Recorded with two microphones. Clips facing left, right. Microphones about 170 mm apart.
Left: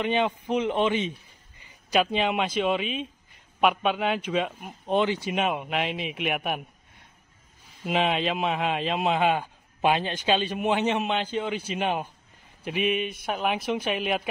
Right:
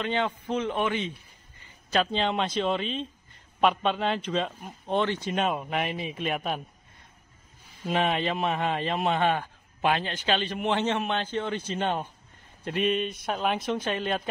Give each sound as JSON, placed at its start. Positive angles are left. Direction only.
{"t": 0.0, "sound": "a man's voice", "side_deg": 15}
{"t": 5.9, "sound": "a man's voice", "side_deg": 90}
{"t": 6.2, "sound": "a man's voice", "side_deg": 10}
{"t": 7.9, "sound": "a man's voice", "side_deg": 0}
{"t": 9.3, "sound": "a man's voice", "side_deg": 15}